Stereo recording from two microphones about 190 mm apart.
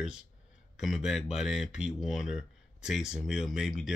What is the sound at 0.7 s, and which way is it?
Speech, centre (ahead or behind).